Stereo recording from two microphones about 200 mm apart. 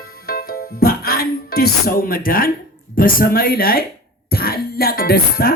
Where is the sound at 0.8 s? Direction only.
50° left (ahead or behind).